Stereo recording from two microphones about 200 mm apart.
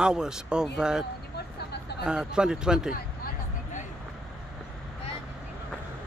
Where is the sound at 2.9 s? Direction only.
45° left (ahead or behind).